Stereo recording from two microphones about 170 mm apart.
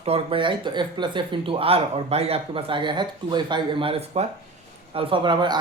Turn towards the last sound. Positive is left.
turn(degrees=-25)  # may be behind; listen again after turning